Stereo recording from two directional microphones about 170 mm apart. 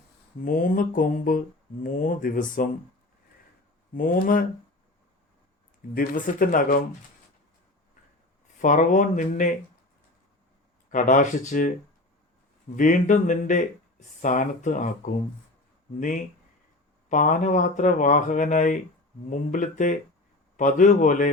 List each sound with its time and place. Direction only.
0.4 s speech: 55° left (ahead or behind)
3.9 s speech: 55° left (ahead or behind)
5.9 s speech: 55° left (ahead or behind)
8.6 s speech: 50° left (ahead or behind)
10.9 s speech: 50° left (ahead or behind)
12.7 s speech: 50° left (ahead or behind)